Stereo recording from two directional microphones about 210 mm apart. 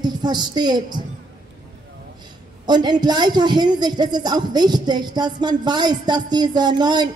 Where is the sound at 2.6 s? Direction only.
20° right (ahead or behind).